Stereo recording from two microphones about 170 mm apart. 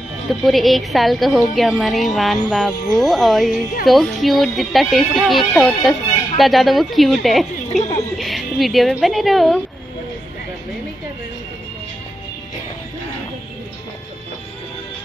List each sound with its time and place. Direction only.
0.3 s speech: centre (ahead or behind)
7.7 s speech: 40° left (ahead or behind)
8.2 s speech: centre (ahead or behind)